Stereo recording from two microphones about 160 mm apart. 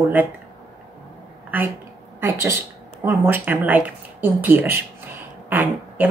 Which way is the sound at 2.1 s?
15° right (ahead or behind).